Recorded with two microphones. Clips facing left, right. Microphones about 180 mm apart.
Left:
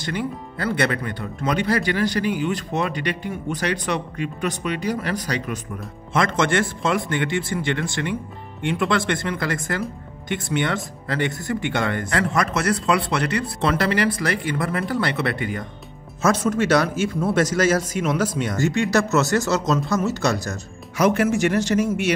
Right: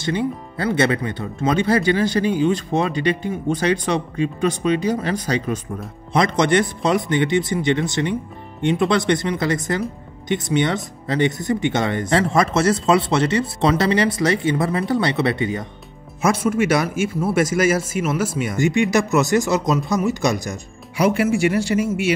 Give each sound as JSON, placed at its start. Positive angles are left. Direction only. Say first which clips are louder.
{"t": 0.0, "sound": "speech", "louder": "right 5 dB", "side_deg": -25}
{"t": 16.2, "sound": "speech", "louder": "right 1 dB", "side_deg": -10}